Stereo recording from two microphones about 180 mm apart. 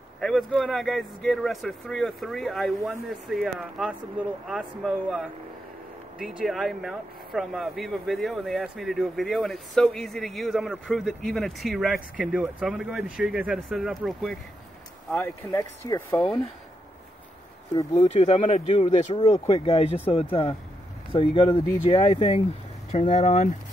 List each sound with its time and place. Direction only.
0.2 s speech: 5° left (ahead or behind)
17.9 s speech: 35° left (ahead or behind)